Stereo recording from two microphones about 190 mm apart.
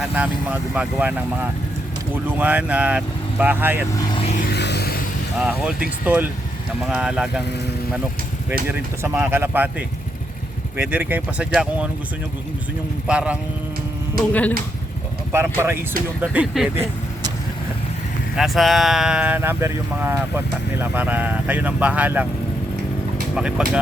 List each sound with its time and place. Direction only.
0.0 s speech: 5° right (ahead or behind)
3.9 s vehicle: 25° left (ahead or behind)
4.3 s music: 45° left (ahead or behind)
4.5 s music: 60° left (ahead or behind)
5.4 s speech: 5° right (ahead or behind)
8.6 s speech: 10° right (ahead or behind)
13.1 s speech: 5° right (ahead or behind)
15.3 s speech: 10° right (ahead or behind)
18.3 s speech: centre (ahead or behind)
23.3 s speech: 5° right (ahead or behind)